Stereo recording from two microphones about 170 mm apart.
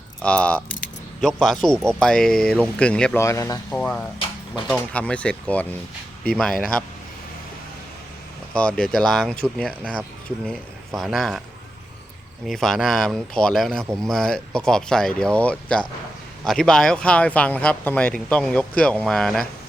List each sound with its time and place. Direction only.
0.2 s speech: 5° left (ahead or behind)
3.2 s speech: 15° left (ahead or behind)
3.8 s speech: 5° left (ahead or behind)
8.5 s speech: 5° left (ahead or behind)
12.5 s speech: centre (ahead or behind)